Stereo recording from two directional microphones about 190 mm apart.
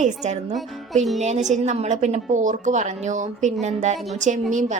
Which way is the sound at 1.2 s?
35° right (ahead or behind).